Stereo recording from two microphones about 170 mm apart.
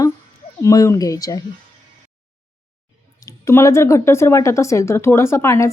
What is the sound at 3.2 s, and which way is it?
A woman's voice, 15° left (ahead or behind).